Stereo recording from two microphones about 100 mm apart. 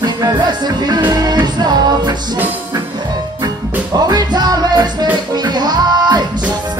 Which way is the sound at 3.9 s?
40° right (ahead or behind).